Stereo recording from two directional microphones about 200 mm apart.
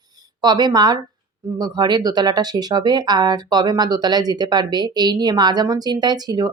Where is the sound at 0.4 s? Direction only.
20° right (ahead or behind).